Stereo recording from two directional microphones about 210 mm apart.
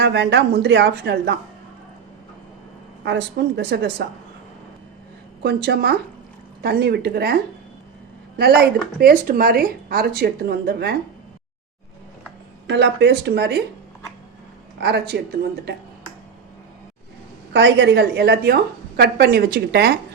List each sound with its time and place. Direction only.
0.0 s a woman's voice: 55° right (ahead or behind)
3.0 s a woman's voice: 55° right (ahead or behind)
5.4 s speech: 50° right (ahead or behind)
8.4 s speech: 50° right (ahead or behind)
12.6 s speech: 55° right (ahead or behind)
14.8 s speech: 50° right (ahead or behind)
17.5 s speech: 55° right (ahead or behind)